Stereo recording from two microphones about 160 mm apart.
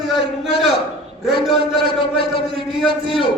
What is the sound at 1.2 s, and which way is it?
A man's voice, centre (ahead or behind).